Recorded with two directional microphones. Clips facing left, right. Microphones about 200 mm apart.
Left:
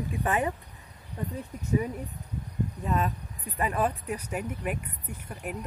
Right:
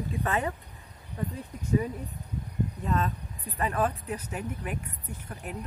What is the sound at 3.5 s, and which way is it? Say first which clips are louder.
Speech: even; 15° left (ahead or behind).